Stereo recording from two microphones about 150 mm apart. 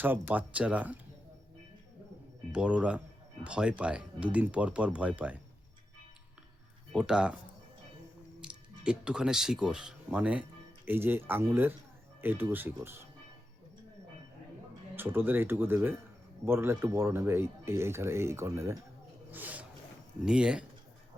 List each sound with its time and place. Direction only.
0.0 s speech: 10° right (ahead or behind)
2.5 s speech: 5° right (ahead or behind)
6.9 s speech: 5° right (ahead or behind)
8.4 s speech: 5° right (ahead or behind)
14.9 s speech: 15° right (ahead or behind)
19.3 s a sound: 10° right (ahead or behind)
20.2 s speech: 5° right (ahead or behind)